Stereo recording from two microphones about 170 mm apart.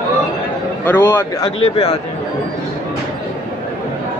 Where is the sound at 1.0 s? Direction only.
20° left (ahead or behind).